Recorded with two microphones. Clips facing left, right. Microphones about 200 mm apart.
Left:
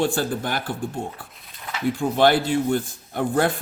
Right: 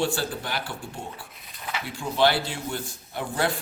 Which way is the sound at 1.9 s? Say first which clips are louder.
Left 4 dB; 50° left (ahead or behind).